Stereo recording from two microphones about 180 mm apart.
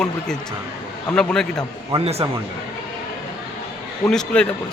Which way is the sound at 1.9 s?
35° right (ahead or behind).